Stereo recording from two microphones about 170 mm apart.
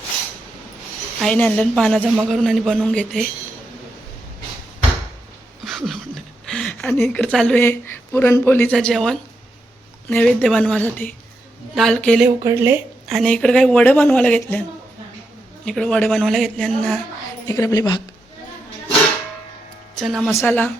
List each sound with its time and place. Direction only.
1.2 s a man's voice: 5° left (ahead or behind)
5.6 s a sound: centre (ahead or behind)
6.9 s a man's voice: 15° left (ahead or behind)
12.4 s speech: 20° right (ahead or behind)
13.1 s speech: 5° left (ahead or behind)
15.6 s a man's voice: 5° left (ahead or behind)
17.5 s a woman's voice: 20° left (ahead or behind)
20.0 s a man's voice: centre (ahead or behind)
20.3 s speech: 10° left (ahead or behind)